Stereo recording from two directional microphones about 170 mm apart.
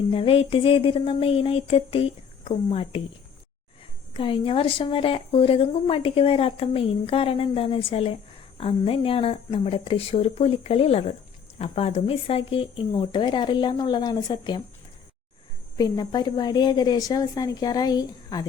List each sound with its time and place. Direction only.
0.1 s a woman's voice: 35° left (ahead or behind)
4.1 s a woman's voice: 30° left (ahead or behind)
15.8 s speech: 25° left (ahead or behind)